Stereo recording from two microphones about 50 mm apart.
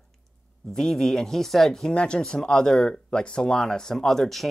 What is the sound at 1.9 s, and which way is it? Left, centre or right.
Speech, centre.